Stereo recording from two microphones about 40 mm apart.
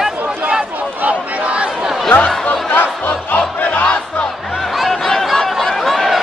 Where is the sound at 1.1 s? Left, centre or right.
Right.